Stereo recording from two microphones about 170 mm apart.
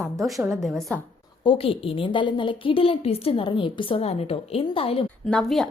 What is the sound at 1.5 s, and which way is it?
A woman's voice, 35° left (ahead or behind).